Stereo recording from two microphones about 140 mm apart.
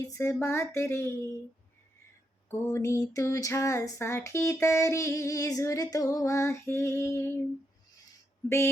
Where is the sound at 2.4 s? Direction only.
20° left (ahead or behind).